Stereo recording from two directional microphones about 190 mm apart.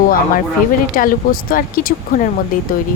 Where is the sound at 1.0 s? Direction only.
45° left (ahead or behind).